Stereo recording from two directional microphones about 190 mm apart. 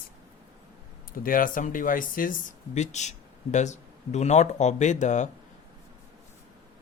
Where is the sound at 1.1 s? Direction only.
45° left (ahead or behind).